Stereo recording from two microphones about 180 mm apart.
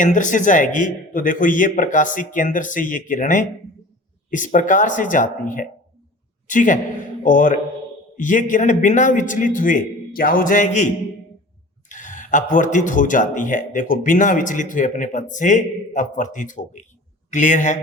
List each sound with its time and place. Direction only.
0.0 s speech: 45° left (ahead or behind)
11.9 s speech: 45° left (ahead or behind)